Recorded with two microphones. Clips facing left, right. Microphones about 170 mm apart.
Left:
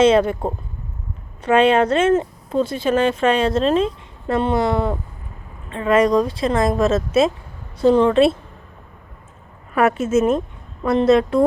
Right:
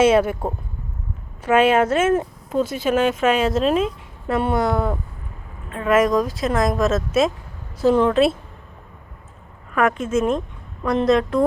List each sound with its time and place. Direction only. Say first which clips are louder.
0.0 s speech: left 1 dB; 5° right (ahead or behind)
6.1 s speech: left 2 dB; 30° left (ahead or behind)
6.4 s speech: left 2 dB; centre (ahead or behind)
9.7 s speech: left 3 dB; 5° left (ahead or behind)